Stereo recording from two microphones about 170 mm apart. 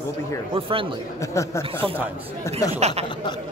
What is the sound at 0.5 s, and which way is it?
Speech, 30° right (ahead or behind).